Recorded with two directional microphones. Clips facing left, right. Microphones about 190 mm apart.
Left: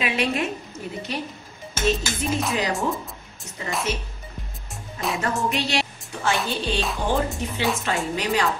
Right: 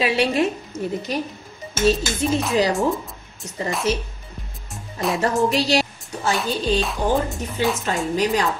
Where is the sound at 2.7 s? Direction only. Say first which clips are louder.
Right 4 dB; centre (ahead or behind).